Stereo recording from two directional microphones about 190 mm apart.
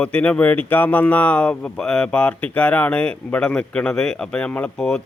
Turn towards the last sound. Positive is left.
turn(degrees=5)  # may be behind; listen again after turning